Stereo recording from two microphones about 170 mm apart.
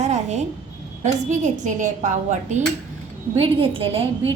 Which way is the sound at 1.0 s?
45° right (ahead or behind).